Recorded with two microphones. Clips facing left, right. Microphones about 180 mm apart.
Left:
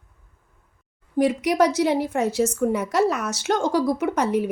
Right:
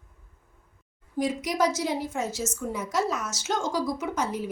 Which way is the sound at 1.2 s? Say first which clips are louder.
Left 6 dB; 65° left (ahead or behind).